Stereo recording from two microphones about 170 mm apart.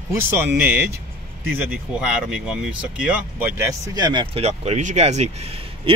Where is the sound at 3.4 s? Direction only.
15° right (ahead or behind).